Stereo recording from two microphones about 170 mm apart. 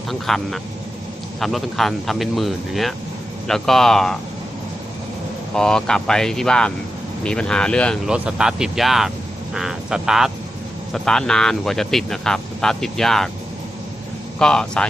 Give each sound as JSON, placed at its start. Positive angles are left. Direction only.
{"t": 0.1, "sound": "speech", "side_deg": 0}
{"t": 5.5, "sound": "speech", "side_deg": 5}
{"t": 8.1, "sound": "speech", "side_deg": -5}
{"t": 14.3, "sound": "speech", "side_deg": 5}